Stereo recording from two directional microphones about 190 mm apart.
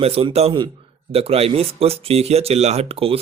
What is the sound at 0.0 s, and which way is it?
Speech, 30° right (ahead or behind).